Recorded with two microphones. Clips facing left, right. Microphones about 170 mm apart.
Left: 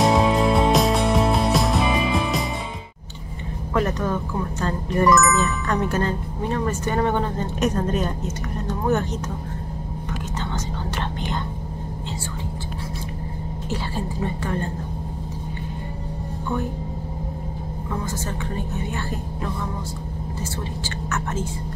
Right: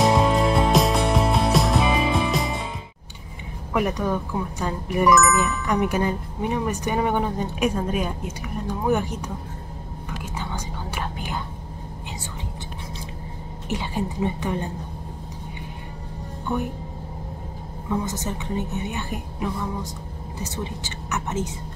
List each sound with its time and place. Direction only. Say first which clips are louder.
0.0 s music: left 1 dB; centre (ahead or behind)
3.7 s speech: even; 10° right (ahead or behind)
10.4 s whispering: left 3 dB; 10° right (ahead or behind)
13.7 s speech: right 2 dB; 15° right (ahead or behind)
18.0 s speech: even; 20° right (ahead or behind)